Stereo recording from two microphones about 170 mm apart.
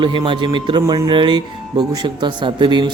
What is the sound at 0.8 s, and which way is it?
Speech, 20° right (ahead or behind).